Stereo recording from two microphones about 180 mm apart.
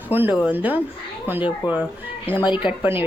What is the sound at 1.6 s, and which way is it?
Speech, 25° left (ahead or behind).